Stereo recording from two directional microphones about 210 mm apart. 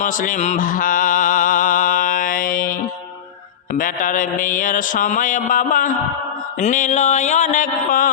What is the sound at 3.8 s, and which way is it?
Mantra, 40° left (ahead or behind).